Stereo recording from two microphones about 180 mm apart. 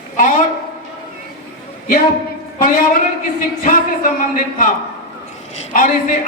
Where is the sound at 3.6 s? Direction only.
50° left (ahead or behind).